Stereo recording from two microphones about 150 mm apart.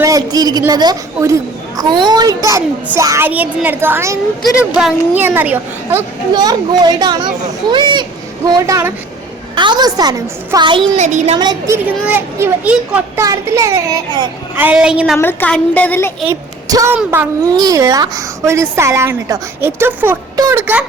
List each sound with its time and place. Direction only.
0.0 s a woman's voice: 25° right (ahead or behind)
4.4 s speech: 5° right (ahead or behind)
6.3 s a woman's voice: 25° right (ahead or behind)
10.9 s speech: 50° right (ahead or behind)
11.3 s a woman's voice: 25° right (ahead or behind)
11.9 s speech: 10° right (ahead or behind)
13.1 s a woman's voice: 20° right (ahead or behind)
14.5 s speech: 10° right (ahead or behind)
15.2 s a woman's voice: 15° left (ahead or behind)
16.2 s a woman's voice: 20° right (ahead or behind)
17.5 s a woman's voice: 25° right (ahead or behind)